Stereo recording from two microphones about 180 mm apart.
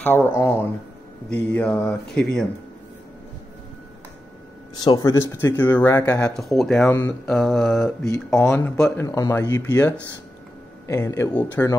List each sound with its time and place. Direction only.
0.0 s speech: 15° left (ahead or behind)
4.7 s speech: 25° left (ahead or behind)
6.3 s speech: centre (ahead or behind)
8.4 s speech: 10° left (ahead or behind)
9.0 s speech: 20° left (ahead or behind)